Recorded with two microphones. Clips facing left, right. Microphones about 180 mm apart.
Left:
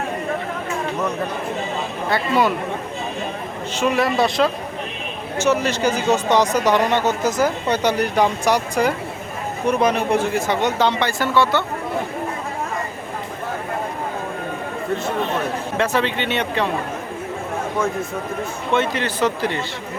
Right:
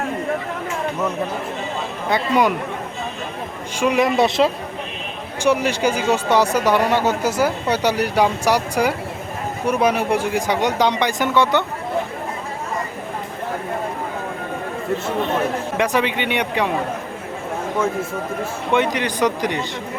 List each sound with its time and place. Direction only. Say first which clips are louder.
2.0 s speech: right 1 dB; 15° right (ahead or behind)
3.8 s speech: right 2 dB; 15° right (ahead or behind)
5.4 s speech: right 1 dB; 10° right (ahead or behind)
15.8 s speech: right 1 dB; 15° right (ahead or behind)
18.7 s speech: right 1 dB; 15° right (ahead or behind)